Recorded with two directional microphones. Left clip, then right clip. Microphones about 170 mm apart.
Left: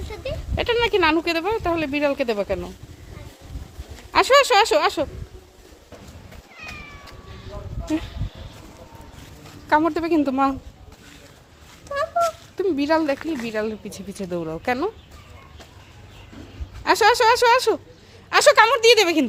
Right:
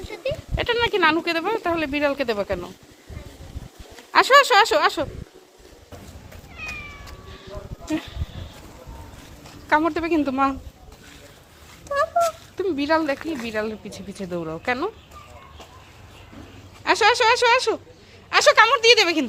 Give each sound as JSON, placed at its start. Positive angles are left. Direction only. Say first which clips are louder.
{"t": 0.1, "sound": "speech", "louder": "right 3 dB", "side_deg": 25}
{"t": 4.1, "sound": "speech", "louder": "right 1 dB", "side_deg": 20}
{"t": 7.4, "sound": "a sound", "louder": "left 1 dB", "side_deg": 15}
{"t": 9.6, "sound": "speech", "louder": "left 1 dB", "side_deg": 15}
{"t": 11.9, "sound": "a sound", "louder": "right 3 dB", "side_deg": 0}
{"t": 12.5, "sound": "speech", "louder": "left 1 dB", "side_deg": 25}
{"t": 16.8, "sound": "speech", "louder": "left 1 dB", "side_deg": 20}